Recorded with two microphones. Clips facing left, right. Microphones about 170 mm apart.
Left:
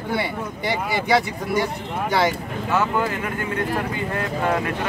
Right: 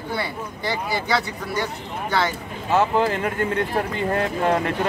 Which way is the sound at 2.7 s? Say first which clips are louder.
Right 3 dB; 30° right (ahead or behind).